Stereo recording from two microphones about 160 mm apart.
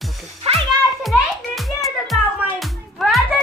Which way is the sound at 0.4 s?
40° right (ahead or behind).